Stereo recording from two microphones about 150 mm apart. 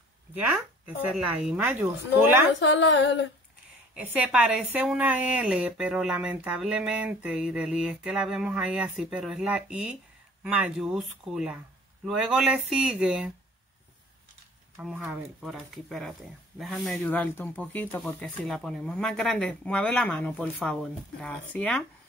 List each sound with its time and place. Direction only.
0.3 s a woman's voice: 10° right (ahead or behind)
3.9 s a woman's voice: 10° right (ahead or behind)
14.8 s speech: 5° right (ahead or behind)